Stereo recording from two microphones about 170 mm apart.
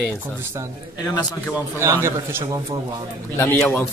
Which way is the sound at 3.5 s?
10° left (ahead or behind).